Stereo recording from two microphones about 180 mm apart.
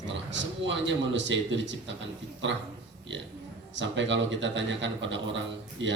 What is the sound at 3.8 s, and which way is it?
Speech, 90° right.